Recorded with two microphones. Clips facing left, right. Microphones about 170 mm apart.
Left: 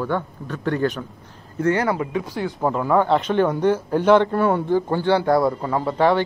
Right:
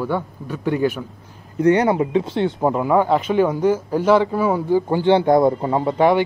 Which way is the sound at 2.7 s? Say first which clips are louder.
Left 1 dB; 10° right (ahead or behind).